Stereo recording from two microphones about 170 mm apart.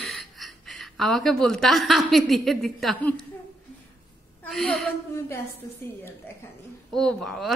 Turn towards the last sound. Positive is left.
turn(degrees=5)  # may be behind; listen again after turning